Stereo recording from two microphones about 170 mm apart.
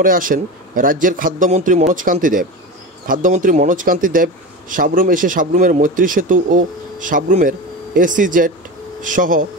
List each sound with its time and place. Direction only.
0.0 s a man's voice: 55° right (ahead or behind)